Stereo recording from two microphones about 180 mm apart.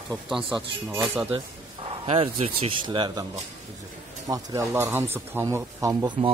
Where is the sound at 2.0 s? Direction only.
35° right (ahead or behind).